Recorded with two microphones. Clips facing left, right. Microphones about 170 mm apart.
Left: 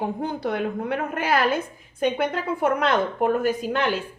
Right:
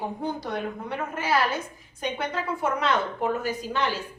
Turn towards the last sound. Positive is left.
turn(degrees=55)  # may be behind; listen again after turning